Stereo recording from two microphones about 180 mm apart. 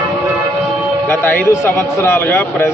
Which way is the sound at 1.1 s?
10° left (ahead or behind).